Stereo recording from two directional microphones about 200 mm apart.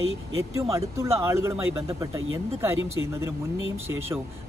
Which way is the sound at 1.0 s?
15° right (ahead or behind).